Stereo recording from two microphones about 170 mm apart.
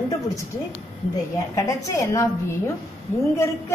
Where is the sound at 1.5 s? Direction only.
20° left (ahead or behind).